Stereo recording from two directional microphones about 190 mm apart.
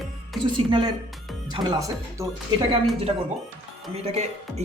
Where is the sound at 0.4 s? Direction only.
25° right (ahead or behind).